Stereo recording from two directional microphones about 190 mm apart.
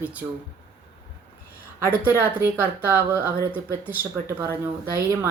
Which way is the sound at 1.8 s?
10° right (ahead or behind).